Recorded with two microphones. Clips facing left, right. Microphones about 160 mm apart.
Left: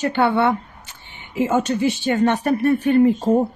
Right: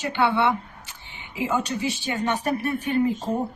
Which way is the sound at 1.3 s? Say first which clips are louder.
Left 6 dB; 55° left (ahead or behind).